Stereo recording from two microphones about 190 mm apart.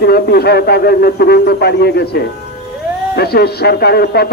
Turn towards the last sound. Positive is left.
turn(degrees=55)  # may be behind; listen again after turning